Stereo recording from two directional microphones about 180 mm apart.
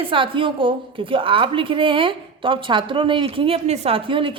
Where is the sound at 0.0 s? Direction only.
30° right (ahead or behind).